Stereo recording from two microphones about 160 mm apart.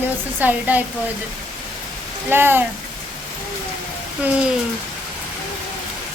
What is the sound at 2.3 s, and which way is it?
Speech, 15° right (ahead or behind).